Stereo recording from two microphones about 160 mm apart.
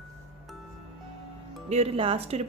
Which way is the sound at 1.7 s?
40° right (ahead or behind).